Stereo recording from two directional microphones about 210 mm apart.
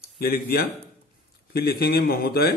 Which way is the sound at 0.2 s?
50° left (ahead or behind).